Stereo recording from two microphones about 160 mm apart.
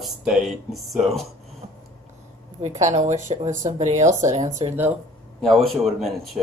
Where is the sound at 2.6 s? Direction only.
45° right (ahead or behind).